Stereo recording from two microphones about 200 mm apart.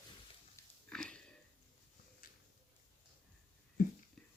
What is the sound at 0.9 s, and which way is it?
Sniff, 5° left (ahead or behind).